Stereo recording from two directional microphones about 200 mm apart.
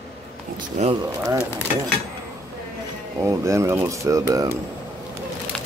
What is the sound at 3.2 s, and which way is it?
Speech, 15° right (ahead or behind).